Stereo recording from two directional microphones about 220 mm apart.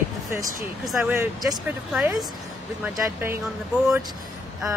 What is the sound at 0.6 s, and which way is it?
Speech, 10° right (ahead or behind).